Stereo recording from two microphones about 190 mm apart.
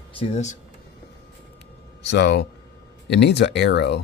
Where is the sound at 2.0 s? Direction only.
65° left (ahead or behind).